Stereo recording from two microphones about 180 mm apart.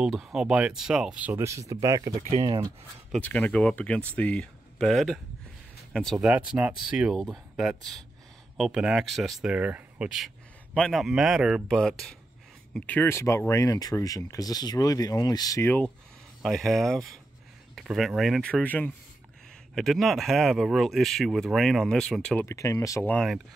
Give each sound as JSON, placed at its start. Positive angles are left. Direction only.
{"t": 0.0, "sound": "speech", "side_deg": 0}
{"t": 2.1, "sound": "speech", "side_deg": -40}
{"t": 2.4, "sound": "speech", "side_deg": -25}
{"t": 3.1, "sound": "speech", "side_deg": 10}
{"t": 16.4, "sound": "speech", "side_deg": 0}